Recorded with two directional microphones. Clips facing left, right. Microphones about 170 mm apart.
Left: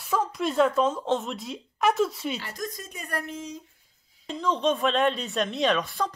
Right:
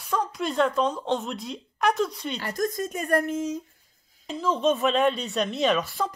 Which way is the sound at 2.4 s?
45° right (ahead or behind).